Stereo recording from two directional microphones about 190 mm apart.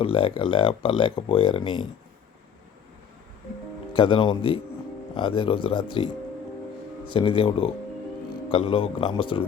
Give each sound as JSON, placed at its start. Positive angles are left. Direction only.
{"t": 0.0, "sound": "speech", "side_deg": 30}
{"t": 3.9, "sound": "speech", "side_deg": 25}
{"t": 7.1, "sound": "speech", "side_deg": 25}